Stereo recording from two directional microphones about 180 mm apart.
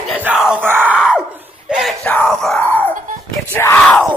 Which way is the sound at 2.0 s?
5° left (ahead or behind).